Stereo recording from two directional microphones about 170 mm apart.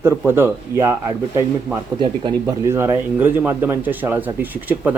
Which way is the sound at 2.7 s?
15° right (ahead or behind).